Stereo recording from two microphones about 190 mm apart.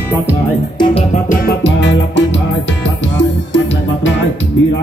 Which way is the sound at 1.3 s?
55° left (ahead or behind).